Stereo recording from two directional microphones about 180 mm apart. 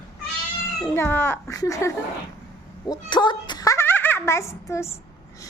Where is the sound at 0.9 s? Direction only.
15° left (ahead or behind).